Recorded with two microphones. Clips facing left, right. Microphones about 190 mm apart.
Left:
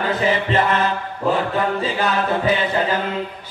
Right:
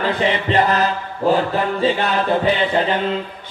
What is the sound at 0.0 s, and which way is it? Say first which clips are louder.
Mantra: right 1 dB; 30° right (ahead or behind).